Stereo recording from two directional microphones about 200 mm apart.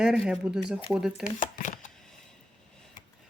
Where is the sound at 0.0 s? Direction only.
5° right (ahead or behind).